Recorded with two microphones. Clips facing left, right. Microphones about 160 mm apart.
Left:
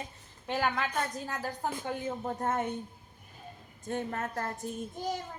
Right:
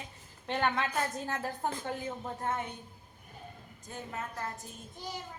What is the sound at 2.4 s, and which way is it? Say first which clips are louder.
Speech: left 3 dB; 45° left (ahead or behind).